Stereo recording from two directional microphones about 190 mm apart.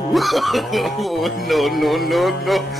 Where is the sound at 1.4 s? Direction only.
Centre (ahead or behind).